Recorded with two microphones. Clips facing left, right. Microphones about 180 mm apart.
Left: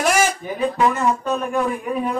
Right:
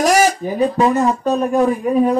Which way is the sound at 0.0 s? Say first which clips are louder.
Right 5 dB; 35° right (ahead or behind).